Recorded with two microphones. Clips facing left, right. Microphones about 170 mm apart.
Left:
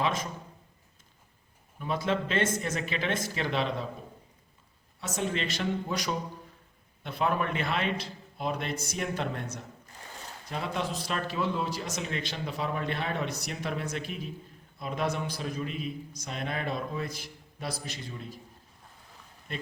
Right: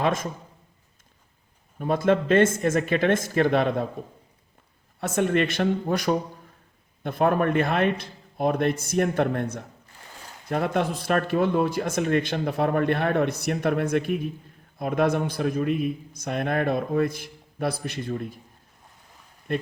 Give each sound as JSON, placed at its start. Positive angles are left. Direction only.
{"t": 0.0, "sound": "a man's voice", "side_deg": -50}
{"t": 1.8, "sound": "a man's voice", "side_deg": -50}
{"t": 4.9, "sound": "a man's voice", "side_deg": -60}
{"t": 19.5, "sound": "speech", "side_deg": -55}